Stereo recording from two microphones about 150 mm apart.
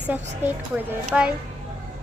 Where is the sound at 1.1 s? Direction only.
5° right (ahead or behind).